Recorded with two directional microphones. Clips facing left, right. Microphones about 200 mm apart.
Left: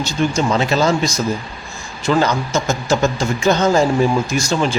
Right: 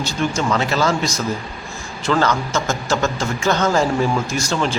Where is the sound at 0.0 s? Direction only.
20° left (ahead or behind).